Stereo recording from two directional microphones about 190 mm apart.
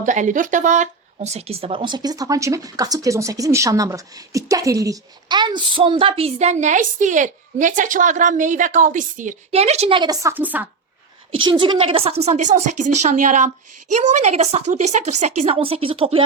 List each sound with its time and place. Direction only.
0.0 s speech: 40° right (ahead or behind); by 10.3 s 20° right (ahead or behind)
10.3 s a woman's voice: 10° right (ahead or behind)
11.3 s a woman's voice: 25° right (ahead or behind)